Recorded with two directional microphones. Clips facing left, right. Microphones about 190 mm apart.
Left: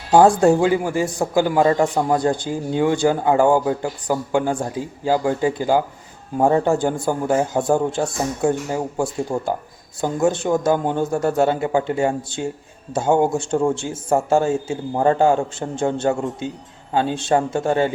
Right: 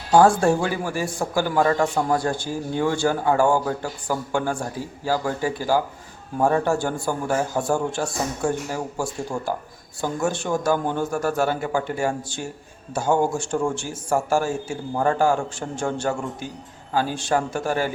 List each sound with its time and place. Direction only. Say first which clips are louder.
0.1 s speech: left 3 dB; 20° left (ahead or behind)